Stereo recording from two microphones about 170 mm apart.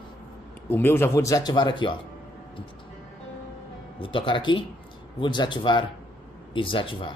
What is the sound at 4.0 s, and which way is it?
Speech, 30° left (ahead or behind).